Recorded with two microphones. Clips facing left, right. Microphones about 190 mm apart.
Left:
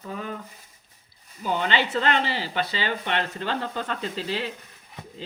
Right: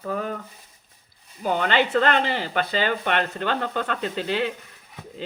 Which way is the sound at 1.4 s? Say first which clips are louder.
Right 3 dB; 55° right (ahead or behind).